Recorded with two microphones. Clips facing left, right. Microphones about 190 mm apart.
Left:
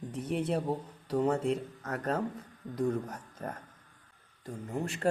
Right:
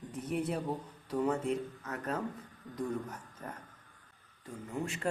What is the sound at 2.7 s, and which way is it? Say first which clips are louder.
Speech: left 5 dB; 40° left (ahead or behind).